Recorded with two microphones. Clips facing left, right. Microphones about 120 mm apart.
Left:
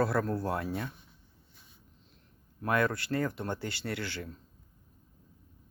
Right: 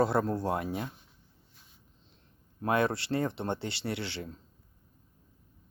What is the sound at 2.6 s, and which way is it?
Speech, 25° right (ahead or behind).